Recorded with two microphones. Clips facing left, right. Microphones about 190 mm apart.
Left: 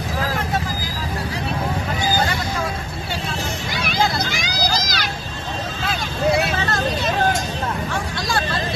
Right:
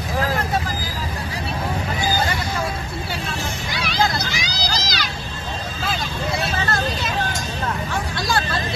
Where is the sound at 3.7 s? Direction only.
50° left (ahead or behind).